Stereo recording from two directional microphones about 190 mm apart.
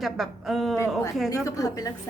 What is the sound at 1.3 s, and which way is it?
Speech, 15° left (ahead or behind).